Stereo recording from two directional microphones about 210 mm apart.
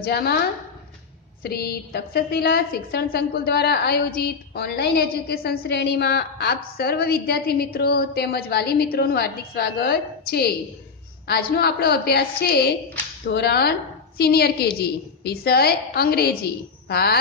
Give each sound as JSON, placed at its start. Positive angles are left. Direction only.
{"t": 0.0, "sound": "a woman's voice", "side_deg": 45}
{"t": 1.4, "sound": "a woman's voice", "side_deg": 50}